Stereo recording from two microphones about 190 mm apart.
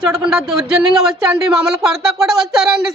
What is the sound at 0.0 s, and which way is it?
Speech, centre (ahead or behind).